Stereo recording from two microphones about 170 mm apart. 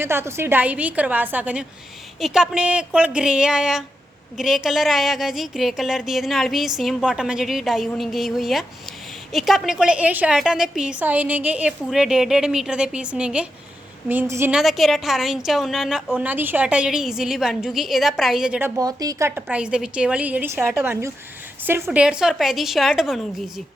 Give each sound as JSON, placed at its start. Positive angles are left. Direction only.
{"t": 0.0, "sound": "a woman's voice", "side_deg": -15}
{"t": 14.5, "sound": "a woman's voice", "side_deg": 0}
{"t": 18.8, "sound": "speech", "side_deg": -20}
{"t": 19.5, "sound": "a woman's voice", "side_deg": -5}